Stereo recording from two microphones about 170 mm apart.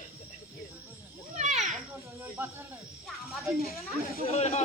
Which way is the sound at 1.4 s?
45° right (ahead or behind).